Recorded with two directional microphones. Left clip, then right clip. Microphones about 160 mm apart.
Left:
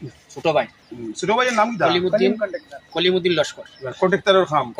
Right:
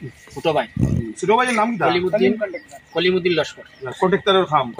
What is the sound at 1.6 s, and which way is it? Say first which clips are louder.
Speech: left 1 dB; 50° left (ahead or behind).